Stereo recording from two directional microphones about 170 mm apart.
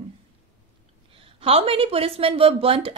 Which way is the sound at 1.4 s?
35° right (ahead or behind).